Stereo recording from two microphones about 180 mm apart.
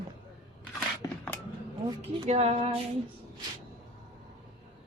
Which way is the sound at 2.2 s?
35° right (ahead or behind).